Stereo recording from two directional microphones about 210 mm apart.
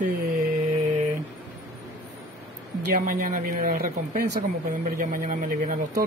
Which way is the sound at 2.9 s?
40° right (ahead or behind).